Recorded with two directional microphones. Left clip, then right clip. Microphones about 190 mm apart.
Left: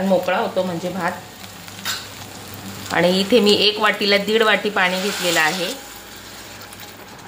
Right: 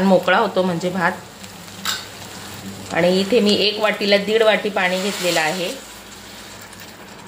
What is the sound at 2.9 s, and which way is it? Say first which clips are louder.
Speech: even; 10° left (ahead or behind).